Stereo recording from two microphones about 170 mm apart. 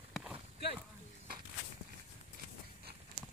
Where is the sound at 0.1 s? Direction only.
5° right (ahead or behind).